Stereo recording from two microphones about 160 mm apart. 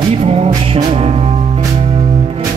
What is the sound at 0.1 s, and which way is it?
Music, 40° right (ahead or behind).